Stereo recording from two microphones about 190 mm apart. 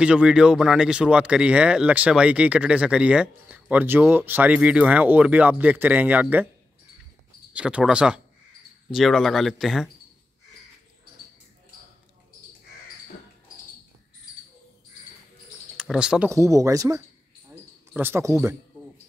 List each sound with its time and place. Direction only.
0.0 s speech: 5° right (ahead or behind)
7.5 s speech: 5° right (ahead or behind)
15.8 s speech: 5° right (ahead or behind)
16.3 s speech: 15° right (ahead or behind)